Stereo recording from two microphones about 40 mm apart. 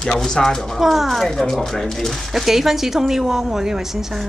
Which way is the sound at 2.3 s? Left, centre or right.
Centre.